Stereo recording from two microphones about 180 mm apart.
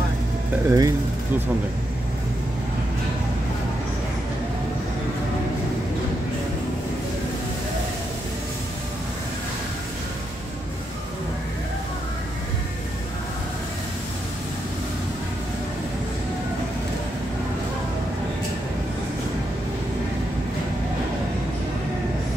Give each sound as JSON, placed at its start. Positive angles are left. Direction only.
{"t": 0.7, "sound": "speech", "side_deg": -20}